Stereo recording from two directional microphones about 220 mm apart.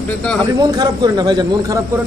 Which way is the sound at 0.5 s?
20° right (ahead or behind).